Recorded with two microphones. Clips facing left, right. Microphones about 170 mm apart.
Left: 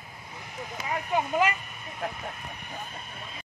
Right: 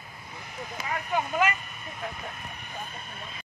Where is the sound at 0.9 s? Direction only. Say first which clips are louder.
Left 2 dB; 20° left (ahead or behind).